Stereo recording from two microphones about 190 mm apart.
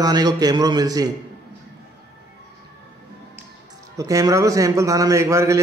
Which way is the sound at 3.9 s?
20° right (ahead or behind).